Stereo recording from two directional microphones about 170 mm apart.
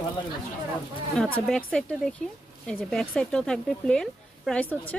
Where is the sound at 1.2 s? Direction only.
5° left (ahead or behind).